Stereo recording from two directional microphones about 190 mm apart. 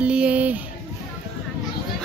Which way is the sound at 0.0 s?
5° right (ahead or behind).